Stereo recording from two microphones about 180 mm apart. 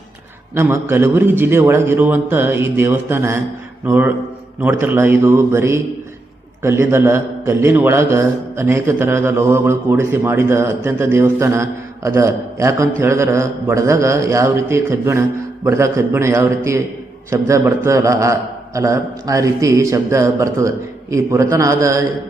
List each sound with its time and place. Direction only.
0.5 s a man's voice: 15° right (ahead or behind)